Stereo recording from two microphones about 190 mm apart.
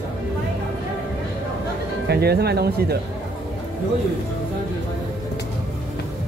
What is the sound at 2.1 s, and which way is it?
Speech, 55° right (ahead or behind).